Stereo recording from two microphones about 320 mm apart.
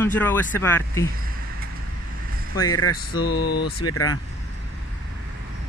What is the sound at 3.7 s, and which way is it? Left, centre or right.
Speech, left.